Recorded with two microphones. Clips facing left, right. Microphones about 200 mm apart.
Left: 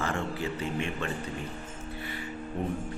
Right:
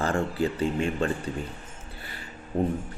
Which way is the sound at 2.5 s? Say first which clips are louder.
Right 7 dB; 35° right (ahead or behind).